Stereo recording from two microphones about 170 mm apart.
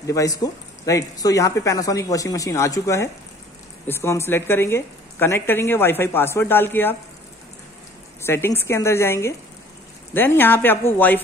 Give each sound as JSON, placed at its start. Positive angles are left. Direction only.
{"t": 0.0, "sound": "a woman's voice", "side_deg": 20}
{"t": 8.2, "sound": "a woman's voice", "side_deg": 15}